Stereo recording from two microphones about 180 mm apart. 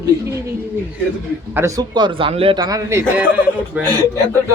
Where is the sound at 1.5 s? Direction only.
20° right (ahead or behind).